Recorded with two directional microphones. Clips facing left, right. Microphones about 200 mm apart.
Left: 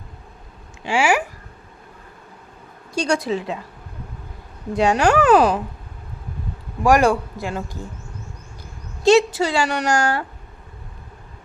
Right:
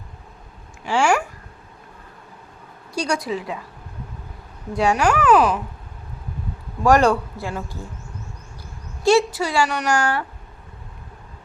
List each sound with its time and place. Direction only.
0.9 s speech: 10° left (ahead or behind)
2.9 s a woman's voice: 25° left (ahead or behind)
4.7 s a woman's voice: 20° left (ahead or behind)
4.9 s speech: 35° left (ahead or behind)
6.8 s speech: 10° left (ahead or behind)
9.0 s a woman's voice: 25° left (ahead or behind)